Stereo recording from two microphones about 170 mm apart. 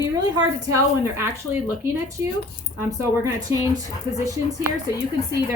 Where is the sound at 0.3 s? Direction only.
15° right (ahead or behind).